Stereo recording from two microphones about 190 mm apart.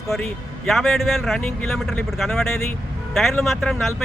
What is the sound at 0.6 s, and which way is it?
Speech, centre (ahead or behind).